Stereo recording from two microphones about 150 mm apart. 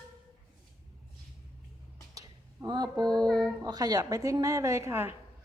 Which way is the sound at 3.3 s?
Centre (ahead or behind).